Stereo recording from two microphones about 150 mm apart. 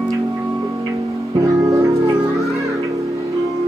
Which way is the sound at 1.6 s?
20° right (ahead or behind).